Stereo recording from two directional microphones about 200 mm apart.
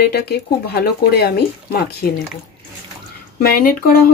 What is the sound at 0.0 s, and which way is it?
Speech, 55° left (ahead or behind).